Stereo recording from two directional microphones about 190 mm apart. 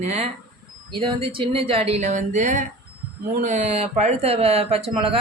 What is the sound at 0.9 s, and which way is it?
Speech, 25° right (ahead or behind).